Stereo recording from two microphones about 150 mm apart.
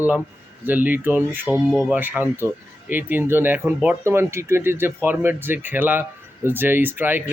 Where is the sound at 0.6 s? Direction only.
10° right (ahead or behind).